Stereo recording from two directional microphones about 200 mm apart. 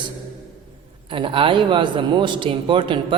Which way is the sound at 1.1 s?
25° right (ahead or behind).